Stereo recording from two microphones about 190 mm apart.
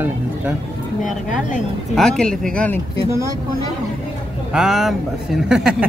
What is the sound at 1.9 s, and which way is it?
Speech, centre (ahead or behind).